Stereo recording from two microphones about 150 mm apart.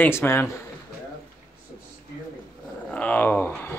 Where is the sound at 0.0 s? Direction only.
15° left (ahead or behind).